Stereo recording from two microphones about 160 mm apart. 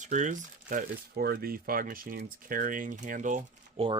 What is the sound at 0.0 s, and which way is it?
Speech, 50° right (ahead or behind).